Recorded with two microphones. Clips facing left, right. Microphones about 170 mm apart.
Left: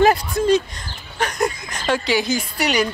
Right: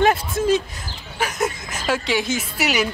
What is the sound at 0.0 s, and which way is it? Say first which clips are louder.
Speech: left 2 dB; centre (ahead or behind).